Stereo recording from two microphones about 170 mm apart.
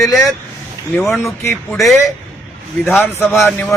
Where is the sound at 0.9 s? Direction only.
Centre (ahead or behind).